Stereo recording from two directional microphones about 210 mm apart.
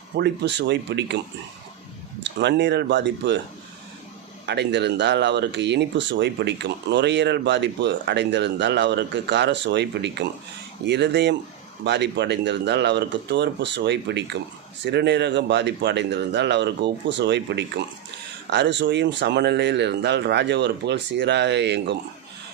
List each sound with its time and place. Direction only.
0.2 s speech: 55° right (ahead or behind)
2.2 s speech: 55° right (ahead or behind)
4.4 s speech: 55° right (ahead or behind)